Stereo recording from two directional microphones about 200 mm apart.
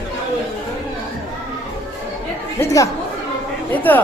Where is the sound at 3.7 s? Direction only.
10° left (ahead or behind).